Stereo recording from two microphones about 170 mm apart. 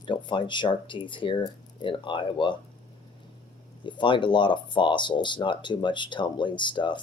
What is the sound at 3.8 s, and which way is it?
Speech, 25° left (ahead or behind).